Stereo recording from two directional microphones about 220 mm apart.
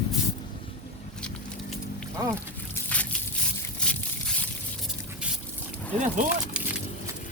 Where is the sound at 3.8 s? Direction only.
5° left (ahead or behind).